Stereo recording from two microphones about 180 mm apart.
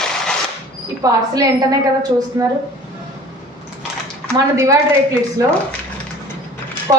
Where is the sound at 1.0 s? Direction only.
20° right (ahead or behind).